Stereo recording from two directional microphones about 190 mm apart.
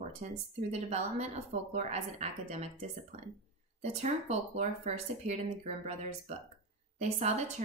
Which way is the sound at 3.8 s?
35° right (ahead or behind).